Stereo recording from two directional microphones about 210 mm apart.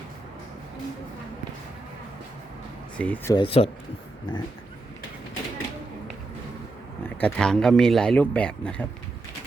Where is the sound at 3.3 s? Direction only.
25° left (ahead or behind).